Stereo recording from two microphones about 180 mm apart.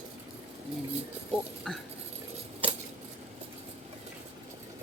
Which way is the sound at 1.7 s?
5° left (ahead or behind).